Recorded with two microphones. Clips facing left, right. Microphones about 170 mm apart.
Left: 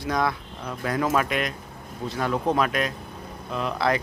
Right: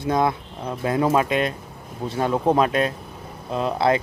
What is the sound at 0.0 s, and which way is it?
Speech, 25° right (ahead or behind).